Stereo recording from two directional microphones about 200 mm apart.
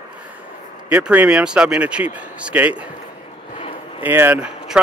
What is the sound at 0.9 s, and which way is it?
Speech, 10° right (ahead or behind).